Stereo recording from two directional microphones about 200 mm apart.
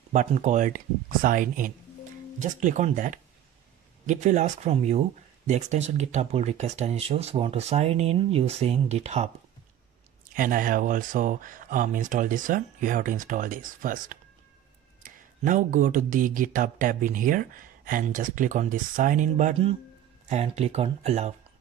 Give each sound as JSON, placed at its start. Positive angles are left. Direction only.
{"t": 0.1, "sound": "speech", "side_deg": -35}
{"t": 10.3, "sound": "speech", "side_deg": -45}